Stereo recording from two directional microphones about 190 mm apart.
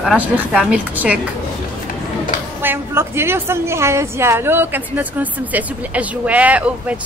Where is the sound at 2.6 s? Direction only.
10° right (ahead or behind).